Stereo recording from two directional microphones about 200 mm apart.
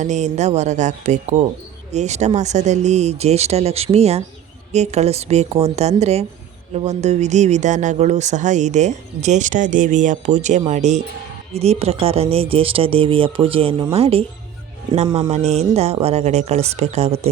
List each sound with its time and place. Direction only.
0.0 s speech: 35° right (ahead or behind)
15.3 s speech: 35° right (ahead or behind)